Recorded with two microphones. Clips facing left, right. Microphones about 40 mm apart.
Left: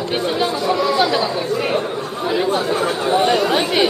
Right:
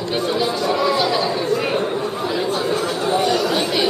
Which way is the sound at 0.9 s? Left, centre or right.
Centre.